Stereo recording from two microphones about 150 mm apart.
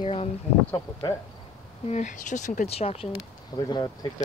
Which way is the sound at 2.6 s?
40° left (ahead or behind).